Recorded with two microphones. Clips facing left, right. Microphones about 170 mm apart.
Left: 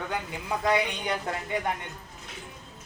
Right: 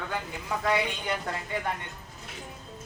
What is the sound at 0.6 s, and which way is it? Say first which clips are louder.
Speech: left 2 dB; 20° left (ahead or behind).